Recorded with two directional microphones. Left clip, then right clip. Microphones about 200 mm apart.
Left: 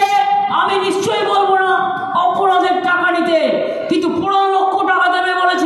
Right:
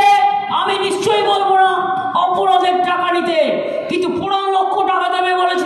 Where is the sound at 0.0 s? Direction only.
35° right (ahead or behind).